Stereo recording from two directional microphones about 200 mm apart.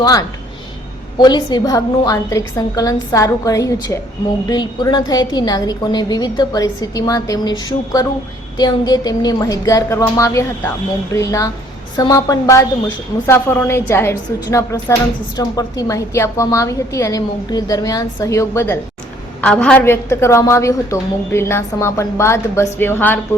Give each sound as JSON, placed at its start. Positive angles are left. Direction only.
{"t": 0.0, "sound": "a woman's voice", "side_deg": 20}